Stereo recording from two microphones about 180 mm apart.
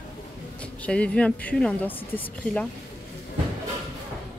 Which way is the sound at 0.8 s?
5° left (ahead or behind).